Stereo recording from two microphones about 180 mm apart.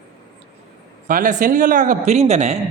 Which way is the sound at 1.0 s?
50° right (ahead or behind).